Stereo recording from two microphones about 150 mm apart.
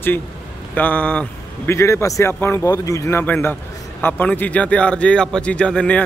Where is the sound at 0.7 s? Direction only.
10° left (ahead or behind).